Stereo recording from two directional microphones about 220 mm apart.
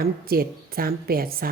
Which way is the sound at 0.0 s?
45° right (ahead or behind).